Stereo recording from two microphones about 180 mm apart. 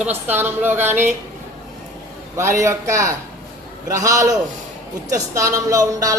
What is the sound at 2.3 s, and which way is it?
Speech, 15° right (ahead or behind).